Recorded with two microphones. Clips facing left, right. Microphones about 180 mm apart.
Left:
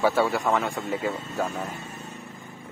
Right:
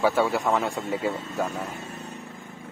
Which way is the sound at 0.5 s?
15° right (ahead or behind).